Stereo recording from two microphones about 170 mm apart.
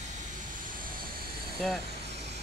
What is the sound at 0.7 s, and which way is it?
Vehicle, 55° right (ahead or behind).